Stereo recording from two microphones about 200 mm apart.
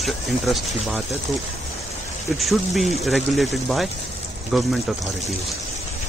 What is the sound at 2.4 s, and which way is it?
Speech, centre (ahead or behind).